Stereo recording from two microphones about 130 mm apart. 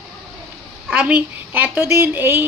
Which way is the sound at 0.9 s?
10° right (ahead or behind).